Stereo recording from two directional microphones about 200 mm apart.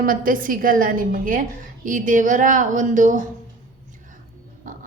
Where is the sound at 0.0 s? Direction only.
45° right (ahead or behind).